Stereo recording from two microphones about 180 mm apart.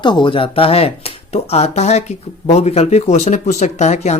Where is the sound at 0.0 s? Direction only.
25° left (ahead or behind).